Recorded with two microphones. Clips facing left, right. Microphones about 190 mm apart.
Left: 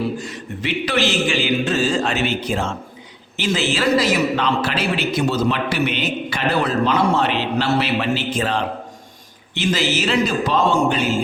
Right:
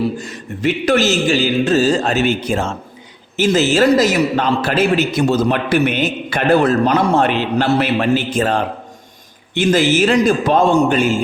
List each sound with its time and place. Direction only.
0.2 s a man's voice: 45° right (ahead or behind)